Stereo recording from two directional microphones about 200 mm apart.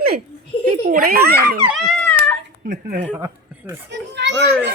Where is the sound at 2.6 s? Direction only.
45° right (ahead or behind).